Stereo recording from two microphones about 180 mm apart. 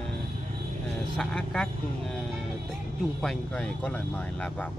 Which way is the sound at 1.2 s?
5° left (ahead or behind).